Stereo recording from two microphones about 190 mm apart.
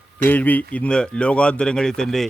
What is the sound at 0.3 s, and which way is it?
Speech, 10° left (ahead or behind).